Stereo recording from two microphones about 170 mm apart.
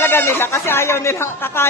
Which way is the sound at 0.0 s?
15° left (ahead or behind).